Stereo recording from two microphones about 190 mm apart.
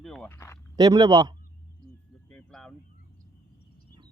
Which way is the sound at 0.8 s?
20° right (ahead or behind).